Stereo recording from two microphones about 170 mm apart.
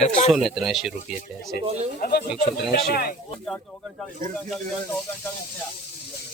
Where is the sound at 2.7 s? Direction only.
60° left (ahead or behind).